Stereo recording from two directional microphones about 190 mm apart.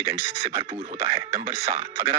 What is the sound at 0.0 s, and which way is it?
Speech, 15° right (ahead or behind).